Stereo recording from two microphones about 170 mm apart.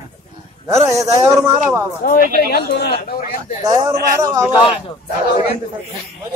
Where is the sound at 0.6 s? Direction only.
20° right (ahead or behind).